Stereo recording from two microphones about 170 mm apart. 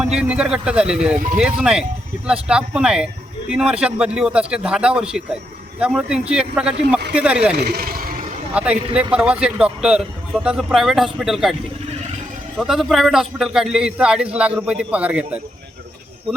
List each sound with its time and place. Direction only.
0.0 s a man's voice: 5° right (ahead or behind)
7.6 s vehicle: 65° right (ahead or behind)
8.5 s a man's voice: 5° right (ahead or behind)
11.9 s vehicle: 40° right (ahead or behind)
12.5 s a man's voice: centre (ahead or behind)